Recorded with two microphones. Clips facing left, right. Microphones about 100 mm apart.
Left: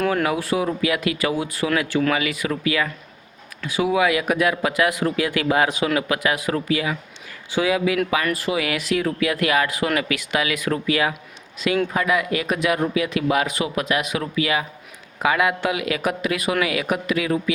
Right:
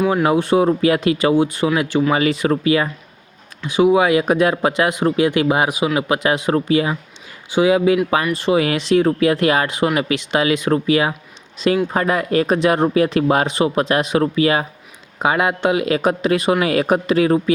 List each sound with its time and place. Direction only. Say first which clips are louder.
0.3 s speech: right 7 dB; 25° right (ahead or behind)
2.1 s speech: right 7 dB; 30° right (ahead or behind); by 6.0 s 15° right (ahead or behind)
6.0 s speech: right 4 dB; 25° right (ahead or behind)